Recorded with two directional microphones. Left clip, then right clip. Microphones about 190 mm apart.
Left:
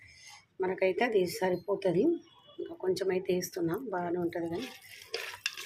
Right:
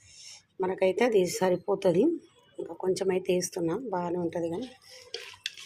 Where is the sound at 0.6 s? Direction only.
25° right (ahead or behind).